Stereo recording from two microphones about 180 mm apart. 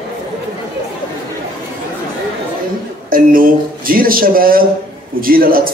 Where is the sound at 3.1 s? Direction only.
50° right (ahead or behind).